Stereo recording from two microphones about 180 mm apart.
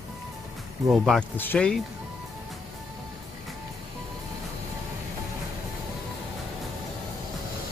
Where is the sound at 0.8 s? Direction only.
Centre (ahead or behind).